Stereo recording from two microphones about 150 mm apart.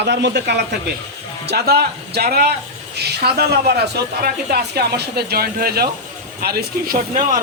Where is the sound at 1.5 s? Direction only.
90° right.